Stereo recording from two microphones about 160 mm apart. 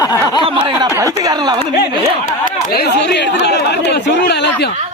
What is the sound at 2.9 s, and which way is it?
Speech, 90° left.